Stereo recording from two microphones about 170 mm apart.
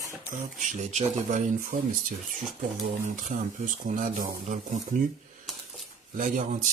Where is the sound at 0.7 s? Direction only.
45° right (ahead or behind).